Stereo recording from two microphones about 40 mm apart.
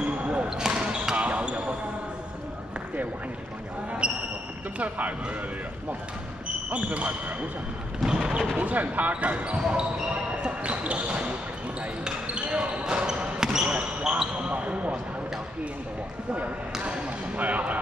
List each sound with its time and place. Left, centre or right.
0.0 s basketball bounce: right
0.6 s basketball bounce: right
1.1 s basketball bounce: right
4.0 s basketball bounce: right
4.7 s speech: right
6.7 s speech: right
8.0 s speech: centre
8.5 s speech: right
12.4 s basketball bounce: right
13.0 s basketball bounce: centre
17.4 s speech: right